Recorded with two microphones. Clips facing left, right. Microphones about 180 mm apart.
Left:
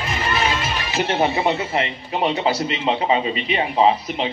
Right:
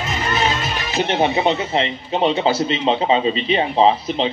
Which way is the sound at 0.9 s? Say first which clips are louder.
Right 2 dB; 20° right (ahead or behind).